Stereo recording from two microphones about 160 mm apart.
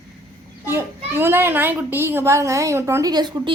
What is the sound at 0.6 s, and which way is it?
A child's voice, 15° right (ahead or behind).